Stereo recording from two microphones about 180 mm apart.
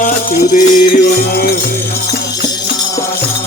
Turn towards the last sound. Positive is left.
turn(degrees=50)  # may be behind; listen again after turning